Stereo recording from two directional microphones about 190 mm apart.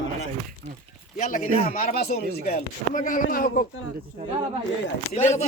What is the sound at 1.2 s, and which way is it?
Speech, 40° left (ahead or behind).